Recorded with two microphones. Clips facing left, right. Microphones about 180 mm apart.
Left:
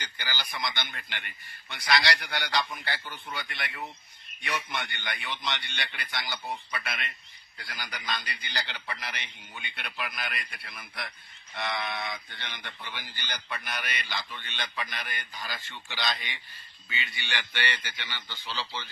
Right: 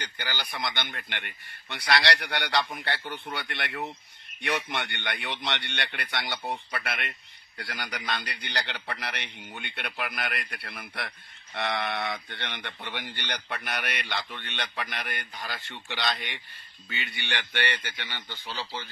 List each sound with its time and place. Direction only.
0.0 s speech: 60° right (ahead or behind)